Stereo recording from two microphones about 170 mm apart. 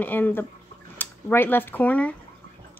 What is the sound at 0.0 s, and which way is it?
Speech, 10° left (ahead or behind).